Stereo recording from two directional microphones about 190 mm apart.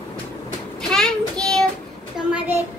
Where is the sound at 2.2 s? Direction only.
5° right (ahead or behind).